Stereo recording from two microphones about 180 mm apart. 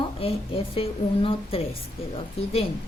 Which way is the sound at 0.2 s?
30° left (ahead or behind).